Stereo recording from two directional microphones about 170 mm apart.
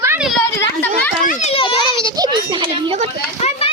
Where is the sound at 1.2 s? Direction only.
50° left (ahead or behind).